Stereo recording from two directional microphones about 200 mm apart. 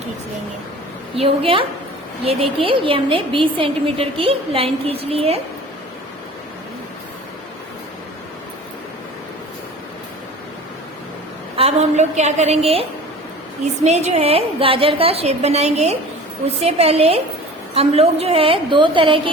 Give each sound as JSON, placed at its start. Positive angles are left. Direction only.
{"t": 1.1, "sound": "a woman's voice", "side_deg": -30}
{"t": 11.5, "sound": "a woman's voice", "side_deg": -30}
{"t": 13.8, "sound": "a woman's voice", "side_deg": -35}